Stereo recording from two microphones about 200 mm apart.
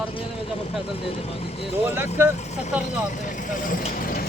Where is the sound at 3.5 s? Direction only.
40° left (ahead or behind).